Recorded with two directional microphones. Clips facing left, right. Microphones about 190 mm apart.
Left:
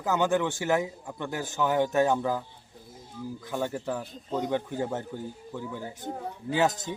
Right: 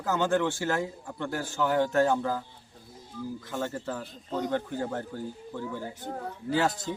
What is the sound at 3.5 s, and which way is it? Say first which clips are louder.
A man's voice: left 4 dB; 15° left (ahead or behind).